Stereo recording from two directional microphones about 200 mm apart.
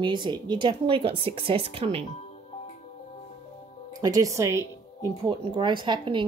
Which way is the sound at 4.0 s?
15° right (ahead or behind).